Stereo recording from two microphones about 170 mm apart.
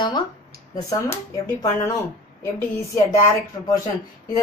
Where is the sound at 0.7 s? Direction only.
20° left (ahead or behind).